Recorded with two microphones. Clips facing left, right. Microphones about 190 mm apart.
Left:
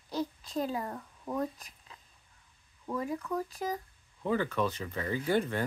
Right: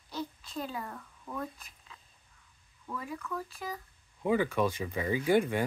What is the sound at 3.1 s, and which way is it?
Speech, 40° left (ahead or behind).